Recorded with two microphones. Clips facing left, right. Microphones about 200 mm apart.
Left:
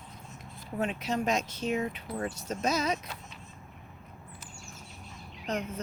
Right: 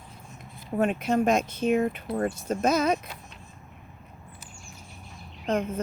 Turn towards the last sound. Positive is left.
turn(degrees=-55)  # may be behind; listen again after turning